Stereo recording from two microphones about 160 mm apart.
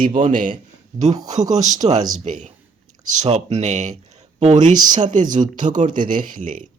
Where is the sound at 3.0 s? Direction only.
50° right (ahead or behind).